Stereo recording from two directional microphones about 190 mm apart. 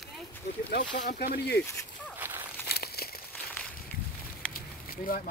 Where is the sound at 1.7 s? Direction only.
15° left (ahead or behind).